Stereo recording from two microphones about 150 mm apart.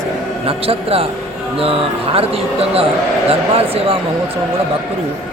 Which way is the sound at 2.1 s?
40° right (ahead or behind).